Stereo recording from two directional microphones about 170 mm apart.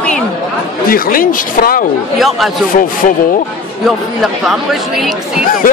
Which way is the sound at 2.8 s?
50° left (ahead or behind).